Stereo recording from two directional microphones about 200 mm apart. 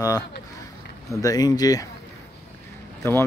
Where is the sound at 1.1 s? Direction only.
15° left (ahead or behind).